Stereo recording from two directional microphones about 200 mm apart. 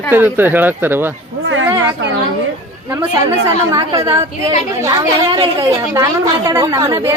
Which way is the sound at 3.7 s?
20° right (ahead or behind).